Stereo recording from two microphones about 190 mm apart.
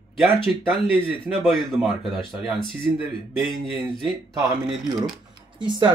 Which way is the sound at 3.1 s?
25° right (ahead or behind).